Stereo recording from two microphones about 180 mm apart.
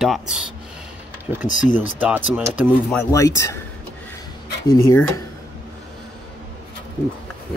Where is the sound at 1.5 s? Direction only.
45° left (ahead or behind).